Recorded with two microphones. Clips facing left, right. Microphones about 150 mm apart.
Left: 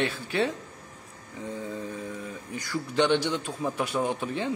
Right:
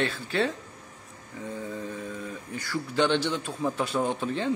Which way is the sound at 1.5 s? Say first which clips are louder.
Even; 20° left (ahead or behind).